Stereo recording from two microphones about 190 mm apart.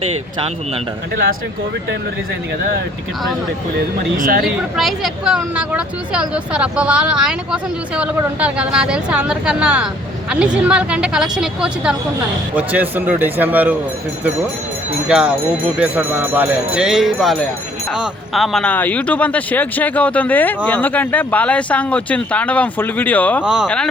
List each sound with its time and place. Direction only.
4.2 s speech: 50° right (ahead or behind)
4.4 s speech: centre (ahead or behind)
15.0 s speech: 5° right (ahead or behind)
23.4 s speech: 5° right (ahead or behind)